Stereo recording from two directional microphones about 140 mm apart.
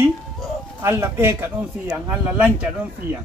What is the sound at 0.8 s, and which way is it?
Speech, 20° right (ahead or behind).